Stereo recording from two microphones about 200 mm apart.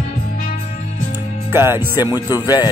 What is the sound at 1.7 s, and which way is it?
Music, 20° left (ahead or behind).